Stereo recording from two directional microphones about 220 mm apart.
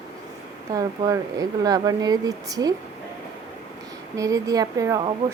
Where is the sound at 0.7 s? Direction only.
15° right (ahead or behind).